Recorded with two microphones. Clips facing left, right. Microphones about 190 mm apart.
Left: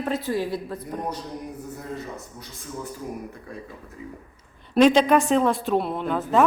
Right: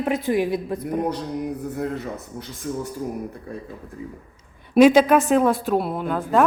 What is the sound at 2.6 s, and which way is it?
Speech, 60° right (ahead or behind).